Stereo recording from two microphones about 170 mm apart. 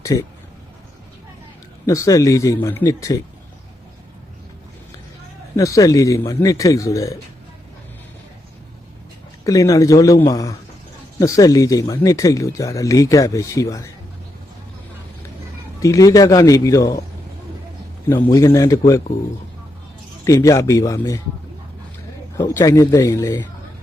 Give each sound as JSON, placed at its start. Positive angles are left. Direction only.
{"t": 0.0, "sound": "speech", "side_deg": 20}
{"t": 1.9, "sound": "speech", "side_deg": 20}
{"t": 5.5, "sound": "speech", "side_deg": 20}
{"t": 9.4, "sound": "speech", "side_deg": 20}
{"t": 15.8, "sound": "speech", "side_deg": 20}
{"t": 18.1, "sound": "speech", "side_deg": 15}
{"t": 20.2, "sound": "speech", "side_deg": 20}
{"t": 22.4, "sound": "speech", "side_deg": 20}